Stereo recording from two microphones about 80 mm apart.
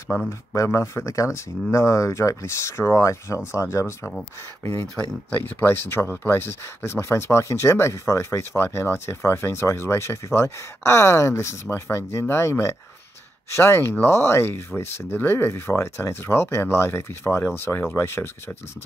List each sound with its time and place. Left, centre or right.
0.6 s speech: left
5.3 s speech: left